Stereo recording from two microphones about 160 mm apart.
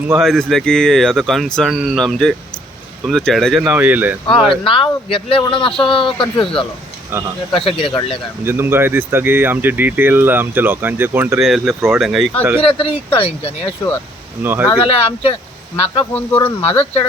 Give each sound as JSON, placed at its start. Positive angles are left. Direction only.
{"t": 0.2, "sound": "speech", "side_deg": 5}
{"t": 4.4, "sound": "speech", "side_deg": 35}
{"t": 8.4, "sound": "speech", "side_deg": -15}
{"t": 11.3, "sound": "speech", "side_deg": 0}
{"t": 12.5, "sound": "speech", "side_deg": 35}
{"t": 14.4, "sound": "speech", "side_deg": -15}
{"t": 14.8, "sound": "speech", "side_deg": 40}
{"t": 15.7, "sound": "speech", "side_deg": 15}